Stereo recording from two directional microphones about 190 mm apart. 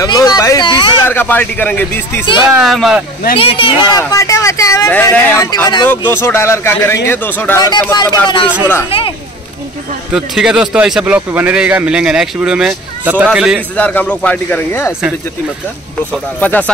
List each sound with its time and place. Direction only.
0.0 s speech: 20° left (ahead or behind)
1.0 s a man's voice: 10° left (ahead or behind)
3.3 s speech: 25° left (ahead or behind)
10.1 s a man's voice: 5° right (ahead or behind)
13.7 s speech: 5° left (ahead or behind)
16.3 s speech: 10° left (ahead or behind)